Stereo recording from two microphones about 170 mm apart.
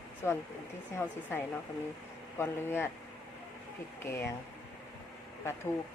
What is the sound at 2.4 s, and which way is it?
Speech, 15° left (ahead or behind).